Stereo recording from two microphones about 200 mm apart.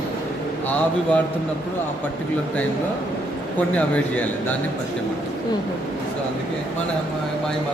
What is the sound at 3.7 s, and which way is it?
Speech, 5° left (ahead or behind).